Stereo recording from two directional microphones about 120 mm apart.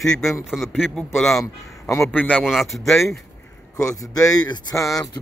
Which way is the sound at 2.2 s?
15° left (ahead or behind).